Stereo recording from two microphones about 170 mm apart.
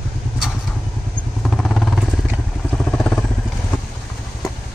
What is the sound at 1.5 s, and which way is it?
Vehicle, centre (ahead or behind).